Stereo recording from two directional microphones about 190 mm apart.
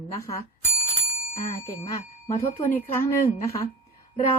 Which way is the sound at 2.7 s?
10° left (ahead or behind).